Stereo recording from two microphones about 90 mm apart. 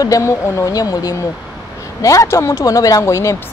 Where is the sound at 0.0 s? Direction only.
35° left (ahead or behind).